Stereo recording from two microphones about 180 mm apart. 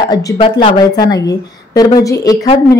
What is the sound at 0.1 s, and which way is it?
A woman's voice, 20° left (ahead or behind).